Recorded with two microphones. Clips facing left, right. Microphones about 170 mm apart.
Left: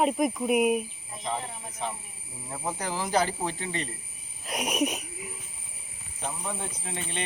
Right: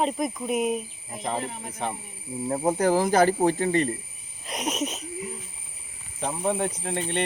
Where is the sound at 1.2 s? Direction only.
65° right (ahead or behind).